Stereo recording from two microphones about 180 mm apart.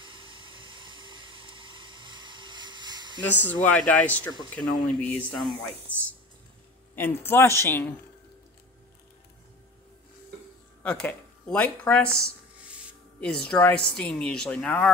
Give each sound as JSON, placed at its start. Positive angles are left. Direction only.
{"t": 0.0, "sound": "pump", "side_deg": -25}
{"t": 3.4, "sound": "a woman's voice", "side_deg": 10}
{"t": 7.0, "sound": "a woman's voice", "side_deg": 10}
{"t": 10.8, "sound": "speech", "side_deg": 5}
{"t": 13.2, "sound": "a woman's voice", "side_deg": 5}